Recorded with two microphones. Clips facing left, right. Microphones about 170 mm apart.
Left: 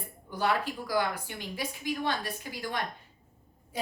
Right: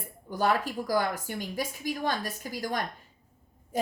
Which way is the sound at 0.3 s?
45° right (ahead or behind).